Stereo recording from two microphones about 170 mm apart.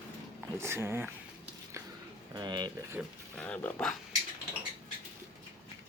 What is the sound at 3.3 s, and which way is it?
Speech, 5° left (ahead or behind).